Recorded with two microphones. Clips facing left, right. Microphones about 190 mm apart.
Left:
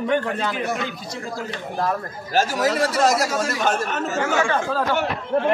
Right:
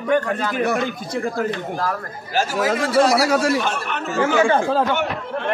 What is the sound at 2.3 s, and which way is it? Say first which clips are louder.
Speech: even; 40° left (ahead or behind).